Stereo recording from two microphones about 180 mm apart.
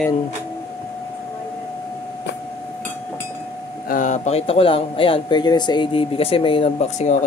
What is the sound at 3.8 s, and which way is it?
A man's voice, 45° left (ahead or behind).